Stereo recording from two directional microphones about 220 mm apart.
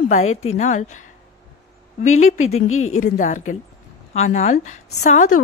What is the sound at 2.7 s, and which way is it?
Speech, 70° left (ahead or behind).